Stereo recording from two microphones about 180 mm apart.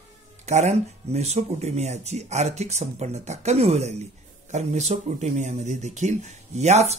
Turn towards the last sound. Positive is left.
turn(degrees=-35)  # may be behind; listen again after turning